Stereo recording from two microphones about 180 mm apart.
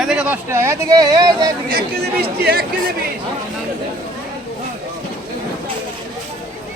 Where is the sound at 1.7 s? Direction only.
55° right (ahead or behind).